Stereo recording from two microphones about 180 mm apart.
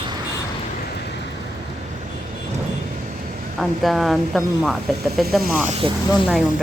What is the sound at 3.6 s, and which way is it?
A woman's voice, centre (ahead or behind).